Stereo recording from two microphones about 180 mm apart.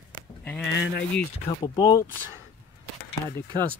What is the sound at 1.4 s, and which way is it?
Speech, 20° left (ahead or behind).